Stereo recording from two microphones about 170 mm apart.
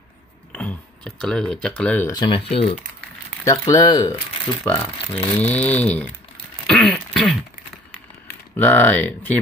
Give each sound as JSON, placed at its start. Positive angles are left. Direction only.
{"t": 0.5, "sound": "a sound", "side_deg": 5}
{"t": 1.8, "sound": "speech", "side_deg": 10}
{"t": 2.1, "sound": "speech", "side_deg": 30}
{"t": 4.6, "sound": "speech", "side_deg": 10}
{"t": 6.7, "sound": "throat clearing", "side_deg": 0}
{"t": 8.5, "sound": "speech", "side_deg": 10}